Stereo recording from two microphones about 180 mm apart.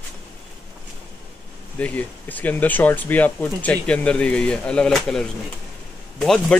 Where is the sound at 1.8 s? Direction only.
10° left (ahead or behind).